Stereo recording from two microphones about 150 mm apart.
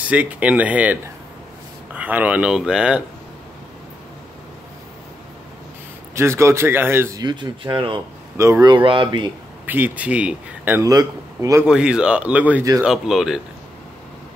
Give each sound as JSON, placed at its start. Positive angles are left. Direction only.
{"t": 0.1, "sound": "speech", "side_deg": -10}
{"t": 6.1, "sound": "speech", "side_deg": -15}
{"t": 7.2, "sound": "speech", "side_deg": -30}
{"t": 8.4, "sound": "speech", "side_deg": -20}
{"t": 8.7, "sound": "speech", "side_deg": -35}
{"t": 9.7, "sound": "speech", "side_deg": -10}
{"t": 11.6, "sound": "speech", "side_deg": -5}